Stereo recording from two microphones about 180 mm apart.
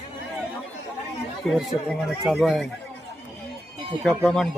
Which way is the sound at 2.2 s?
Centre (ahead or behind).